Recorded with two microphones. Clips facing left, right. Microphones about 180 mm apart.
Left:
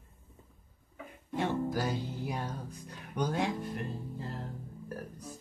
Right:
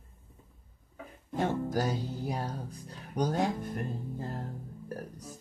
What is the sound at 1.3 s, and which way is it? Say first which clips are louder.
Speech: right 1 dB; 45° right (ahead or behind).